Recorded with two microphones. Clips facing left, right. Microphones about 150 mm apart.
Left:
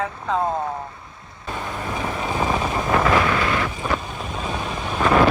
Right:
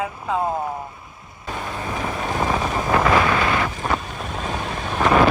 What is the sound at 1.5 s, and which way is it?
Vehicle, 5° right (ahead or behind).